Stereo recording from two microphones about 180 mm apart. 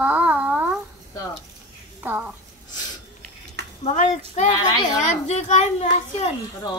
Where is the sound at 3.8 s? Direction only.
40° left (ahead or behind).